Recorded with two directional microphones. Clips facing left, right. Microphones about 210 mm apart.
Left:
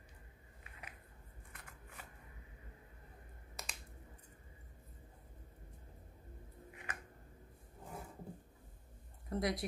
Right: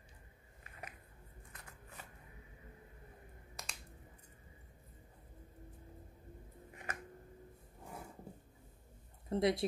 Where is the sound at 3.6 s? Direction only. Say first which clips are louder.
Left 1 dB; centre (ahead or behind).